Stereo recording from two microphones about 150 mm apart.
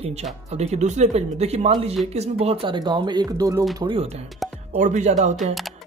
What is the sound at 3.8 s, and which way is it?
Speech, 40° right (ahead or behind).